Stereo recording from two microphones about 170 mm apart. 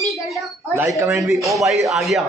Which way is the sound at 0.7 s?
15° right (ahead or behind).